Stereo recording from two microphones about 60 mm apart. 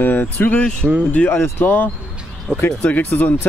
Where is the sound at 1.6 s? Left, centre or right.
Left.